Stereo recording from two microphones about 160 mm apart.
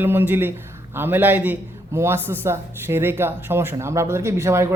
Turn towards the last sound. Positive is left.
turn(degrees=-15)  # may be behind; listen again after turning